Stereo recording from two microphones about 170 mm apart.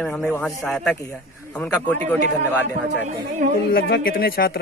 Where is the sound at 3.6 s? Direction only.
60° left (ahead or behind).